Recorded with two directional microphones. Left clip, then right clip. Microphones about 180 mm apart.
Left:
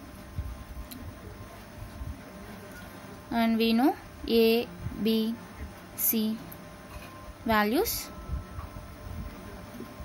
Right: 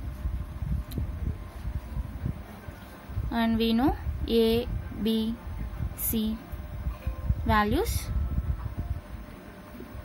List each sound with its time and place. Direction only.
3.3 s a woman's voice: 5° left (ahead or behind)
7.4 s a woman's voice: 5° left (ahead or behind)